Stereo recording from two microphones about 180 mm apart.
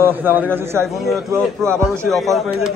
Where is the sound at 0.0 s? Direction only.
10° right (ahead or behind).